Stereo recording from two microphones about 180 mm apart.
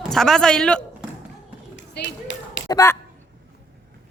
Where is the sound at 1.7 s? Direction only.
85° left.